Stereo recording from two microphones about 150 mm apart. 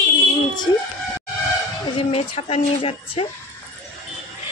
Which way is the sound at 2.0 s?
40° left (ahead or behind).